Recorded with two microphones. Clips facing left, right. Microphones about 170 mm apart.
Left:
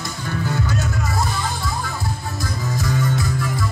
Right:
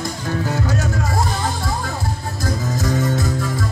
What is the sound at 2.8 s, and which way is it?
Music, 45° right (ahead or behind).